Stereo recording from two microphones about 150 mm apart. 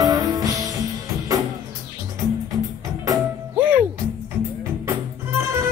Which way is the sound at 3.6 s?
10° right (ahead or behind).